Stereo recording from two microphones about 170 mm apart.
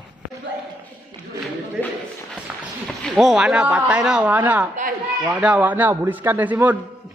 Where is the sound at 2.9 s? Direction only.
Centre (ahead or behind).